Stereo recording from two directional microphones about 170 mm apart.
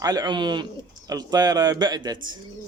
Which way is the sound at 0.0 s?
25° right (ahead or behind).